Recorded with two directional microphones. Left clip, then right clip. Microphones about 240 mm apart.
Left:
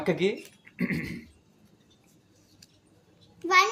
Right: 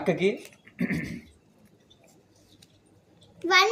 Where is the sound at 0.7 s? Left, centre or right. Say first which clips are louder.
Right 1 dB; left.